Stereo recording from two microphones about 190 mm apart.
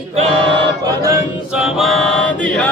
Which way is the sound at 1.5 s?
Centre (ahead or behind).